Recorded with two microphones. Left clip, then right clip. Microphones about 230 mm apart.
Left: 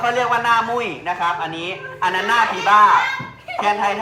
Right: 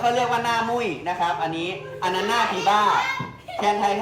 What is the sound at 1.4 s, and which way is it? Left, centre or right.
Speech, centre.